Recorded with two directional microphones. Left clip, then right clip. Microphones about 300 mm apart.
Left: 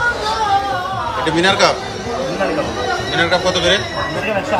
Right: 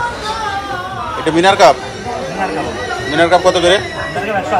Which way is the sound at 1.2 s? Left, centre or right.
Centre.